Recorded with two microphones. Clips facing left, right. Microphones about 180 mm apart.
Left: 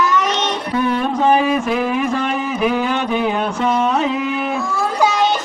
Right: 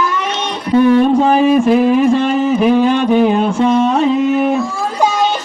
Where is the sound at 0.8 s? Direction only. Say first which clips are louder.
Right 10 dB; 40° right (ahead or behind).